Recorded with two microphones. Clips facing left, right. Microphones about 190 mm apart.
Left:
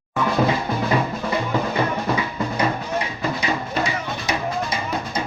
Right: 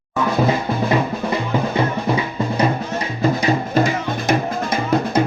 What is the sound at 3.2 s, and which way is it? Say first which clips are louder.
Music: right 6 dB; 45° right (ahead or behind).